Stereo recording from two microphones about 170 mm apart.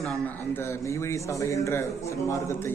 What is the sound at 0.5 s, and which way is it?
A man's voice, 15° left (ahead or behind).